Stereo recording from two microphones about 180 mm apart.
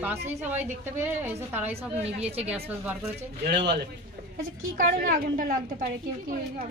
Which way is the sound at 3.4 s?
65° right (ahead or behind).